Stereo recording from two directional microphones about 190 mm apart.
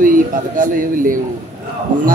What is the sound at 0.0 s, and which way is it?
A man's voice, 45° right (ahead or behind).